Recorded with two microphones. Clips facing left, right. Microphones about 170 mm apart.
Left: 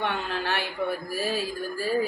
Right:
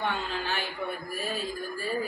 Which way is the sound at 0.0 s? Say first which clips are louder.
Left 2 dB; 70° left (ahead or behind).